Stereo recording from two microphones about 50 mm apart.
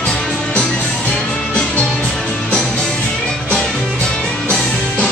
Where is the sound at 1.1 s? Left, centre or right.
Centre.